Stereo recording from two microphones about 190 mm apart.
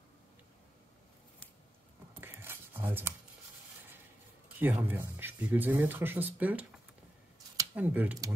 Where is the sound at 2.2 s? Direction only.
10° right (ahead or behind).